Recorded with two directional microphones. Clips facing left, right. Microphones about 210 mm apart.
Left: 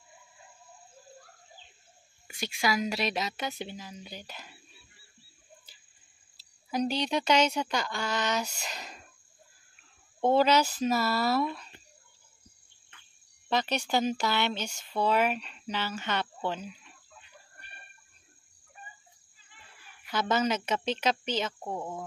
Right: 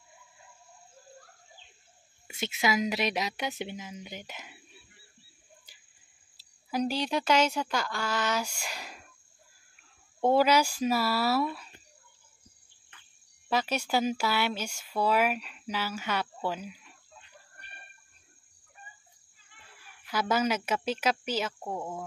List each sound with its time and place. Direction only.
2.2 s a woman's voice: 20° right (ahead or behind)
5.7 s cricket: 15° right (ahead or behind)
6.3 s speech: 5° right (ahead or behind)
10.2 s speech: 10° right (ahead or behind)
13.5 s speech: 5° right (ahead or behind)
20.1 s speech: 10° right (ahead or behind)